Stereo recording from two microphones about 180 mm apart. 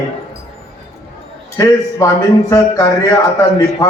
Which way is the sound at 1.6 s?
20° left (ahead or behind).